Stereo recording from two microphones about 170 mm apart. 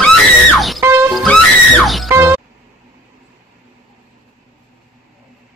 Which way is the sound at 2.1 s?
10° right (ahead or behind).